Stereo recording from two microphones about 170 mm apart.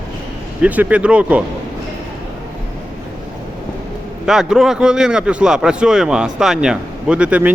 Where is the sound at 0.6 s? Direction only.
10° right (ahead or behind).